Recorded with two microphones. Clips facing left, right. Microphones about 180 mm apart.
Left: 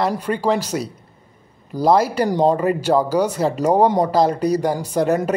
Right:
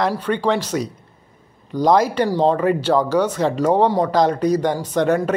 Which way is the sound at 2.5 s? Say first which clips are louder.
Even; 5° left (ahead or behind).